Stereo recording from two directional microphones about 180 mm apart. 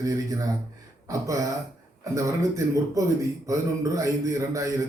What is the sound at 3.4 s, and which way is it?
A man's voice, 20° right (ahead or behind).